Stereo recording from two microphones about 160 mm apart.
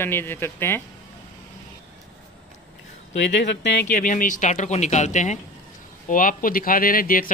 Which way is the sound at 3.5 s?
90° left.